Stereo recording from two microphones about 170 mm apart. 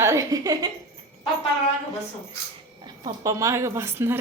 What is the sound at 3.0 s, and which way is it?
A woman's voice, 20° right (ahead or behind).